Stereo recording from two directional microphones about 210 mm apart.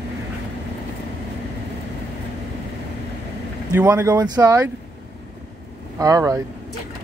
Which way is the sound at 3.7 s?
10° right (ahead or behind).